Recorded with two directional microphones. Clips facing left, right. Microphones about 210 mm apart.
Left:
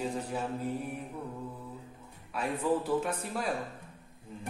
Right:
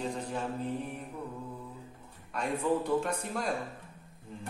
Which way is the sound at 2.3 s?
5° left (ahead or behind).